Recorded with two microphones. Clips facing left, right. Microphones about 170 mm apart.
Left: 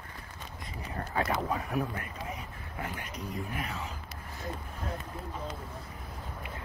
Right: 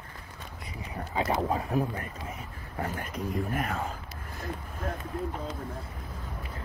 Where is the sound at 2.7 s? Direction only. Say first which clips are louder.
Right 5 dB; 45° right (ahead or behind).